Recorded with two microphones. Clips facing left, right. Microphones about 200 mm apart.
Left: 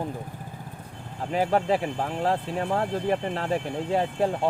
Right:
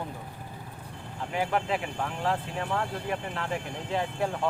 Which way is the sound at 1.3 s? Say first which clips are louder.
Left 6 dB; 35° left (ahead or behind).